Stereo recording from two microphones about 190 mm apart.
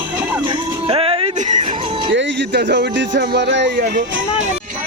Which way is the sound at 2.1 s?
65° right (ahead or behind).